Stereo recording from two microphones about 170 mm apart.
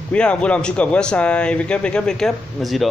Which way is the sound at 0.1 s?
5° left (ahead or behind).